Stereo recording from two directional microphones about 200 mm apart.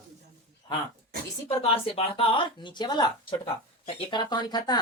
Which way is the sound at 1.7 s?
30° left (ahead or behind).